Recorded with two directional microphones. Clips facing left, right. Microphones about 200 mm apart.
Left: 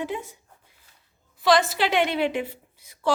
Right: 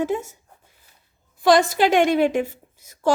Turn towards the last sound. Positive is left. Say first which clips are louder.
# right 6 dB
turn(degrees=-45)  # may be behind; listen again after turning